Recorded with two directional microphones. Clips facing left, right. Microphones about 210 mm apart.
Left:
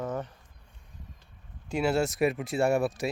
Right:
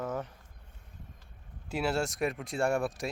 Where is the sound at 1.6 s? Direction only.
Centre (ahead or behind).